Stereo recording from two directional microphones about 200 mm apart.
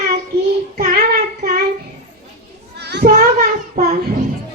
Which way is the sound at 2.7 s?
55° right (ahead or behind).